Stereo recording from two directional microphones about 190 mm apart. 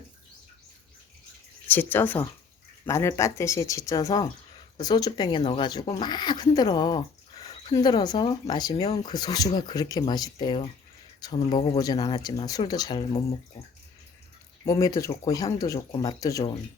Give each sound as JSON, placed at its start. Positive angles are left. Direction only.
{"t": 1.6, "sound": "speech", "side_deg": 10}
{"t": 14.6, "sound": "speech", "side_deg": 15}